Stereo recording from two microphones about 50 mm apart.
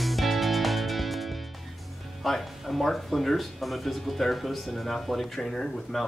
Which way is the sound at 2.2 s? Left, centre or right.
Centre.